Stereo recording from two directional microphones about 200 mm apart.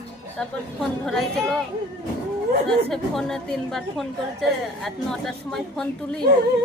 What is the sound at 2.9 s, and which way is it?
A woman's voice, centre (ahead or behind).